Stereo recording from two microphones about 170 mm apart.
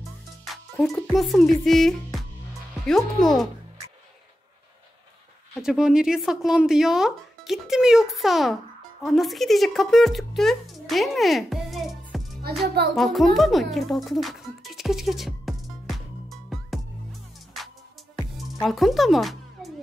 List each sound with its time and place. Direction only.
0.5 s music: centre (ahead or behind)
1.0 s speech: centre (ahead or behind)
5.6 s speech: 5° right (ahead or behind)
12.6 s music: 65° right (ahead or behind)
12.9 s music: centre (ahead or behind)